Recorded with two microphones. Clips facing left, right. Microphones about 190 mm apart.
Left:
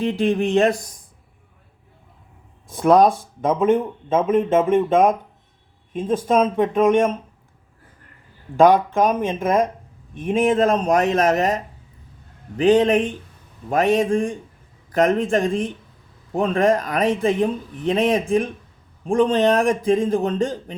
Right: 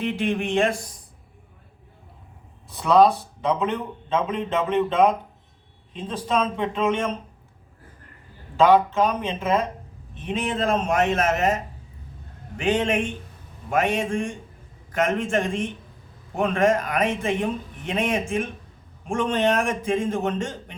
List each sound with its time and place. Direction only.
0.0 s speech: 35° left (ahead or behind)
2.6 s speech: 50° left (ahead or behind)
8.7 s speech: 50° left (ahead or behind)